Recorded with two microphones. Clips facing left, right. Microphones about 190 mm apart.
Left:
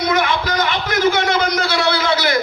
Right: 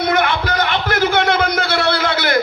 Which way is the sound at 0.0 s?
60° right (ahead or behind).